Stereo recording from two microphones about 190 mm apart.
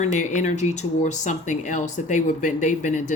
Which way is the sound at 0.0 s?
40° left (ahead or behind).